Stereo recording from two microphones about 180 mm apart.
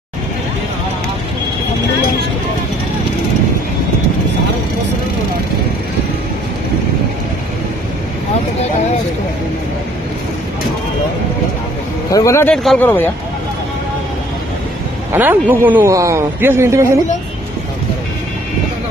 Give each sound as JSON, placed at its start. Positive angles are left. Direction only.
{"t": 12.1, "sound": "speech", "side_deg": 15}
{"t": 15.1, "sound": "speech", "side_deg": -10}